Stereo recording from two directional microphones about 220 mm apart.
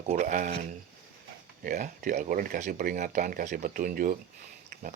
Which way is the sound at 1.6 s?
35° right (ahead or behind).